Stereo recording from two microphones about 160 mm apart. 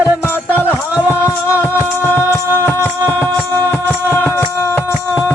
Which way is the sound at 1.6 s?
15° left (ahead or behind).